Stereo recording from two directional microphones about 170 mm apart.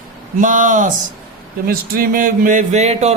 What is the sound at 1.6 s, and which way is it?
Speech, 60° right (ahead or behind).